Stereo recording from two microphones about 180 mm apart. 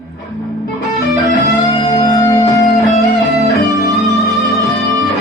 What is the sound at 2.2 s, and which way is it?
Music, 15° left (ahead or behind).